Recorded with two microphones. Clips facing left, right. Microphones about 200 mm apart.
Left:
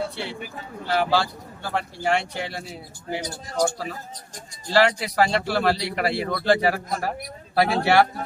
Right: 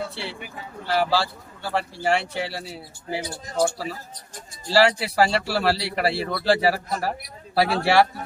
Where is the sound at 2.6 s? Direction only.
30° right (ahead or behind).